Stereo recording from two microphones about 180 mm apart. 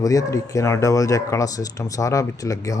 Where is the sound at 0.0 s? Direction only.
20° left (ahead or behind).